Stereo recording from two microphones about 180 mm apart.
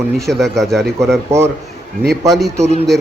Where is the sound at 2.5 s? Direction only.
40° right (ahead or behind).